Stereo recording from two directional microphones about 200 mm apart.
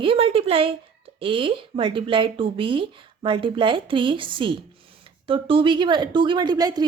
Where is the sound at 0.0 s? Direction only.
30° right (ahead or behind).